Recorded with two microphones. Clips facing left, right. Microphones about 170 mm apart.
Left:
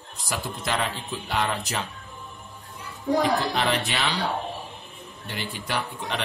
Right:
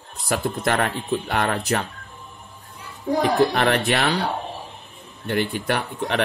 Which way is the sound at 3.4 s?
55° right (ahead or behind).